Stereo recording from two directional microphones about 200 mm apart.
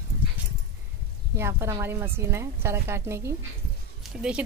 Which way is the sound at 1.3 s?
15° right (ahead or behind).